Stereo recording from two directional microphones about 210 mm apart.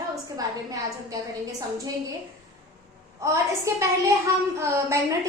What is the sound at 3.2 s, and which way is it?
A woman's voice, 15° right (ahead or behind).